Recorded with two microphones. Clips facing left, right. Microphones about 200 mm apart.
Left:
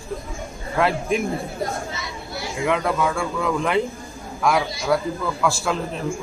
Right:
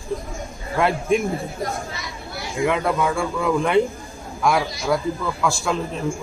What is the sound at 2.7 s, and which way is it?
Speech, centre (ahead or behind).